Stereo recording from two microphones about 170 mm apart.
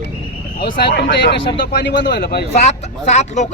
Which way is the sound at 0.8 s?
75° left (ahead or behind).